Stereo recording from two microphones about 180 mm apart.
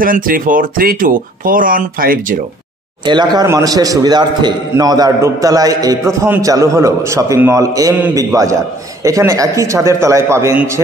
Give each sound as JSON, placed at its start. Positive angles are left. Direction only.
{"t": 0.0, "sound": "speech", "side_deg": -50}
{"t": 3.1, "sound": "a man's voice", "side_deg": -25}